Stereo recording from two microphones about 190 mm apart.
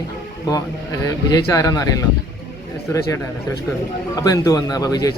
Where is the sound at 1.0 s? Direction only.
20° left (ahead or behind).